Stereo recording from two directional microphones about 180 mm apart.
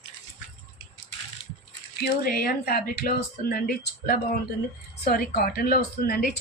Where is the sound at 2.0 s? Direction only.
55° left (ahead or behind).